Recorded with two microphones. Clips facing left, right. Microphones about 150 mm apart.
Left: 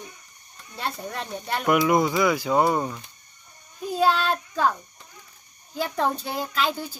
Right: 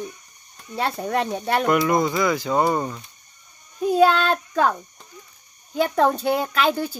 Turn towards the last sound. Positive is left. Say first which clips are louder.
# right 6 dB
turn(degrees=-60)  # may be behind; listen again after turning